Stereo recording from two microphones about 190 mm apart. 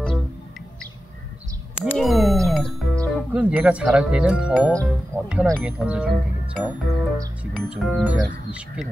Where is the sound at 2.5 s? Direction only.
Centre (ahead or behind).